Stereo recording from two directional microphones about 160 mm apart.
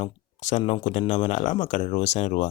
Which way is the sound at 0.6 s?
45° left (ahead or behind).